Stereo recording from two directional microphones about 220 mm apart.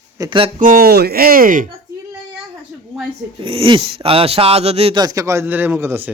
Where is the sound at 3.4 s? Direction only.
25° right (ahead or behind).